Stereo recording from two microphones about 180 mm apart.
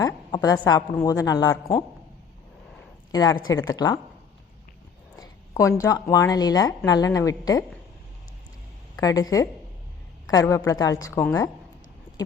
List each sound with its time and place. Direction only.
0.0 s a sound: 20° left (ahead or behind)
0.7 s speech: 20° left (ahead or behind)
3.1 s speech: 20° left (ahead or behind)
5.1 s speech: 20° left (ahead or behind)
9.0 s speech: 20° left (ahead or behind)
12.1 s a sound: 20° right (ahead or behind)